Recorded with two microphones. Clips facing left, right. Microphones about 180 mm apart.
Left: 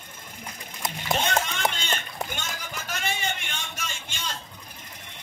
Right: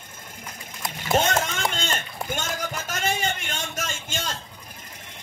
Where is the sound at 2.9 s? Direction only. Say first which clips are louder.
Right 3 dB; 45° right (ahead or behind).